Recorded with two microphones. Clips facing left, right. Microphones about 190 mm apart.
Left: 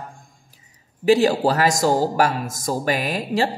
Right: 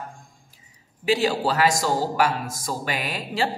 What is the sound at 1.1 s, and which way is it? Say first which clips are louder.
A man's voice: left 6 dB; 45° left (ahead or behind).